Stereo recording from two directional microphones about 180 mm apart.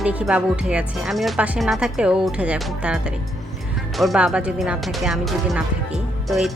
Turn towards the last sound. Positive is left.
turn(degrees=0)  # may be behind; listen again after turning